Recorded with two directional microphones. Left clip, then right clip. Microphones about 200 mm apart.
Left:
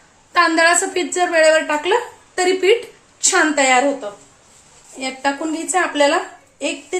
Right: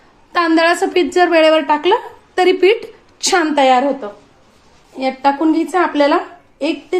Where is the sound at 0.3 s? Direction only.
45° right (ahead or behind).